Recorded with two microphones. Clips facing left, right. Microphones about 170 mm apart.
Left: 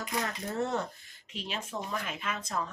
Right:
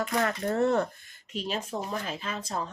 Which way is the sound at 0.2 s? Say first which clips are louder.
Right 6 dB; 65° right (ahead or behind).